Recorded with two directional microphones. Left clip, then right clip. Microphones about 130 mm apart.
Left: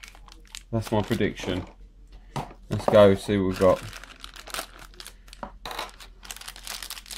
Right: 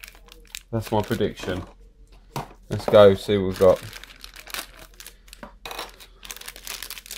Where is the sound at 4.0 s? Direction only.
5° right (ahead or behind).